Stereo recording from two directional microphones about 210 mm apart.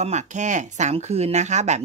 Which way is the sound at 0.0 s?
35° right (ahead or behind).